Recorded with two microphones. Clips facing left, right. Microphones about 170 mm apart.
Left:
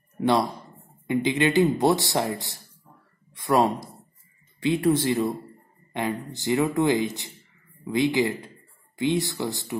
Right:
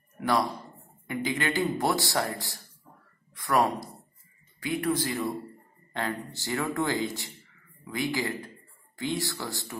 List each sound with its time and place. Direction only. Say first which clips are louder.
0.2 s speech: left 4 dB; 25° left (ahead or behind)
6.3 s speech: left 9 dB; 20° left (ahead or behind)